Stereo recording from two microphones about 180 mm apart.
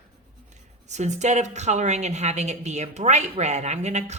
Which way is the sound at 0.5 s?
40° right (ahead or behind).